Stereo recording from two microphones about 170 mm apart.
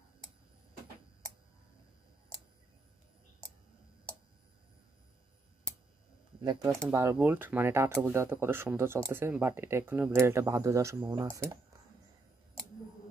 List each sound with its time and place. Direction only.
6.9 s speech: 15° right (ahead or behind)